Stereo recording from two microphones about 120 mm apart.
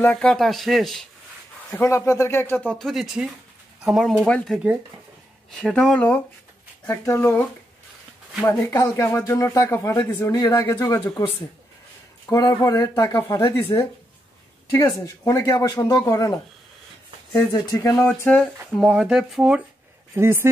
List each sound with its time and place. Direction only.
0.0 s speech: 10° left (ahead or behind)
1.8 s speech: 25° left (ahead or behind)
2.9 s speech: centre (ahead or behind)
7.1 s speech: 20° left (ahead or behind)
8.5 s speech: 30° left (ahead or behind)
12.3 s speech: 30° left (ahead or behind)
14.7 s speech: 25° left (ahead or behind)
17.5 s speech: 30° left (ahead or behind)
17.9 s speech: 15° left (ahead or behind)
18.7 s speech: 5° right (ahead or behind)
20.2 s speech: 20° right (ahead or behind)